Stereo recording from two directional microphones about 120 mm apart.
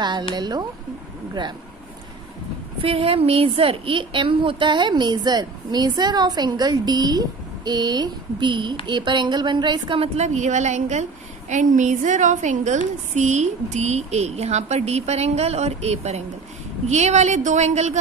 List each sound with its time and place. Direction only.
0.4 s a woman's voice: 35° right (ahead or behind)
2.8 s a woman's voice: 50° right (ahead or behind)
10.1 s a woman's voice: 75° right (ahead or behind)